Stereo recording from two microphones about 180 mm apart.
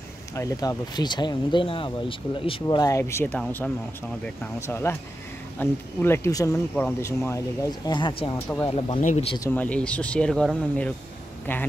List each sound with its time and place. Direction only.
0.3 s speech: 20° left (ahead or behind); by 9.4 s 35° left (ahead or behind)
9.4 s speech: 10° left (ahead or behind)